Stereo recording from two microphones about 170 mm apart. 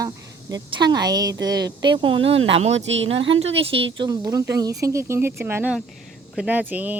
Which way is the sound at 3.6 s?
35° right (ahead or behind).